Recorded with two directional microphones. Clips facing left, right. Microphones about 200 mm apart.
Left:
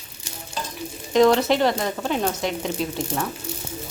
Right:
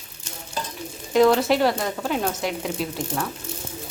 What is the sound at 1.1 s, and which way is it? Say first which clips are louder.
Speech: even; 5° right (ahead or behind).